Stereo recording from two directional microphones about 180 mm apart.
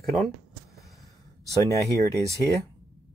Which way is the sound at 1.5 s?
20° left (ahead or behind).